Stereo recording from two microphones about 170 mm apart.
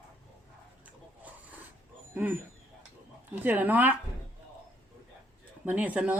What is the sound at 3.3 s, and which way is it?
Speech, 10° right (ahead or behind).